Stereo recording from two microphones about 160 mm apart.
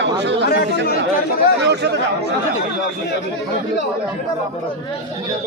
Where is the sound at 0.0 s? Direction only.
90° right.